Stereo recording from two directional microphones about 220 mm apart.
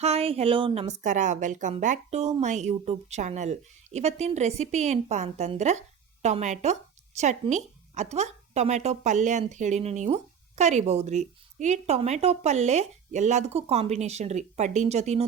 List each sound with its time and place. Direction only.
0.0 s a woman's voice: 25° right (ahead or behind)